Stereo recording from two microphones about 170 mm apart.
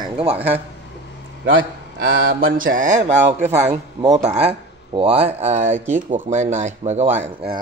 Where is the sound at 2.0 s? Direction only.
60° right (ahead or behind).